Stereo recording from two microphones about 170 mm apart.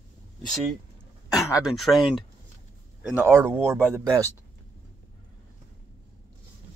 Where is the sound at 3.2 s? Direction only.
15° right (ahead or behind).